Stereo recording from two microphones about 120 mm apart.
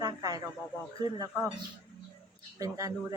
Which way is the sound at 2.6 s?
30° right (ahead or behind).